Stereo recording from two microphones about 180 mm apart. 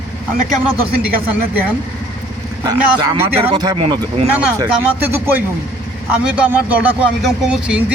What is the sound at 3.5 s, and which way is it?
Speech, 25° right (ahead or behind).